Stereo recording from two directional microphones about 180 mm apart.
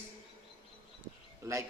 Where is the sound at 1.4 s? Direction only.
15° right (ahead or behind).